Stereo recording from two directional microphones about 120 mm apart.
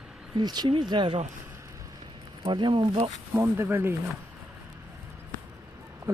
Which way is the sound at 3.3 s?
25° right (ahead or behind).